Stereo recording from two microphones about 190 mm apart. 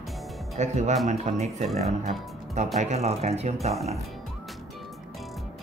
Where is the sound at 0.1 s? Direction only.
Centre (ahead or behind).